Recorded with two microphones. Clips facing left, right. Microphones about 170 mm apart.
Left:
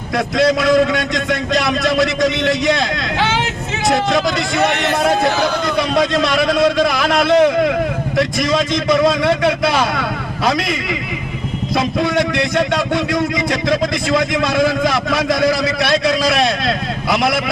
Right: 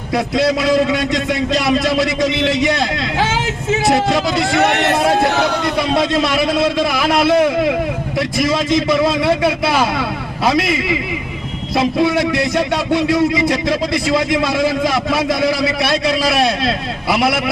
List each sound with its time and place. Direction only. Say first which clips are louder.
0.6 s a man's voice: left 1 dB; 25° right (ahead or behind)
3.2 s speech: even; 45° right (ahead or behind)
6.7 s a man's voice: even; 5° right (ahead or behind)
9.0 s a man's voice: left 1 dB; 5° right (ahead or behind)
12.0 s a man's voice: right 1 dB; 5° right (ahead or behind)
13.7 s a man's voice: even; 25° right (ahead or behind)